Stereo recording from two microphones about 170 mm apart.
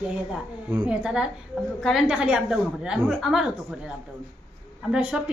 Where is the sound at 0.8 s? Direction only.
5° right (ahead or behind).